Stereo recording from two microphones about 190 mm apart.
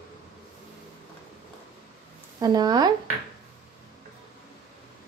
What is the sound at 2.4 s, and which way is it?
Speech, 20° right (ahead or behind).